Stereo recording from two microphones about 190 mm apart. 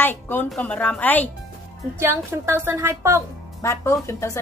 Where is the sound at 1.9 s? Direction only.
15° right (ahead or behind).